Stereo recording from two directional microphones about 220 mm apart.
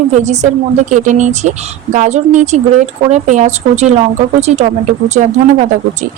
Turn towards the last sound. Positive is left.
turn(degrees=-30)  # may be behind; listen again after turning